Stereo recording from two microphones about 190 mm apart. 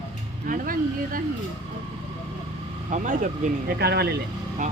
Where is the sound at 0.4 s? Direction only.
45° right (ahead or behind).